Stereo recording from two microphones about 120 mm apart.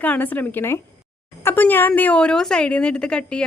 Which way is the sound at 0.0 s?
15° left (ahead or behind).